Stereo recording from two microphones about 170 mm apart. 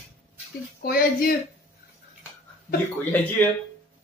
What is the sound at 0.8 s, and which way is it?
Speech, 60° left (ahead or behind).